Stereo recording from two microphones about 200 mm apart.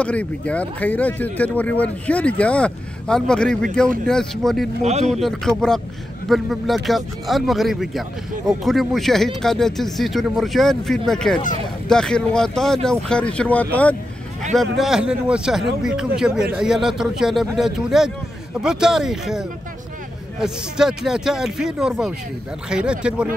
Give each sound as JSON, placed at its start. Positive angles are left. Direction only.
{"t": 0.0, "sound": "speech", "side_deg": 5}
{"t": 4.8, "sound": "speech", "side_deg": -35}
{"t": 5.1, "sound": "speech", "side_deg": 0}